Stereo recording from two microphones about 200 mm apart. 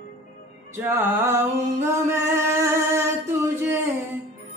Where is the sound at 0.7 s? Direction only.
10° right (ahead or behind).